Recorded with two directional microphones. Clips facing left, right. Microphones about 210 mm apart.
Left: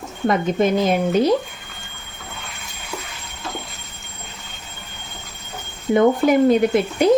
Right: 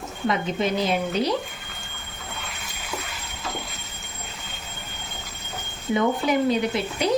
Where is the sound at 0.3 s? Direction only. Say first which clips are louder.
Left 6 dB; 50° left (ahead or behind).